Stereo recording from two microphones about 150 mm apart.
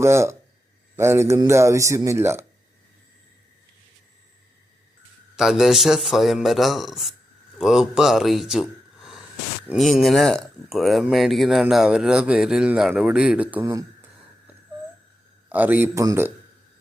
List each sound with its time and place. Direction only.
0.0 s a man's voice: 20° right (ahead or behind)
5.4 s a man's voice: 5° right (ahead or behind); by 16.3 s 20° right (ahead or behind)